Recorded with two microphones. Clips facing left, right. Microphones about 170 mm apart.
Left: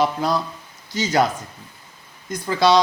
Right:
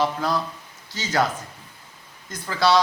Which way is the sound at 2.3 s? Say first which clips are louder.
Left 3 dB; 20° left (ahead or behind).